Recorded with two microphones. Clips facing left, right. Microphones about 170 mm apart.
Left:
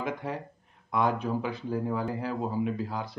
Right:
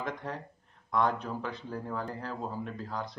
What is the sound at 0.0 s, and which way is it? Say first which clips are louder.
Speech: left 4 dB; 5° left (ahead or behind).